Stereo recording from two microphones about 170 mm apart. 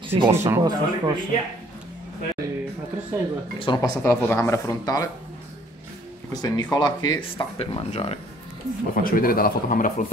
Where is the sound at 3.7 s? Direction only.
15° left (ahead or behind).